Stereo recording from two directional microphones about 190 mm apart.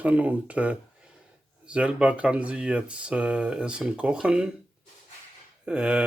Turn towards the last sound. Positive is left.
turn(degrees=-5)  # may be behind; listen again after turning